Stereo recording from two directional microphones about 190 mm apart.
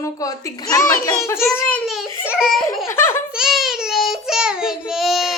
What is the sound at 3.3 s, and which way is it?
Child singing, centre (ahead or behind).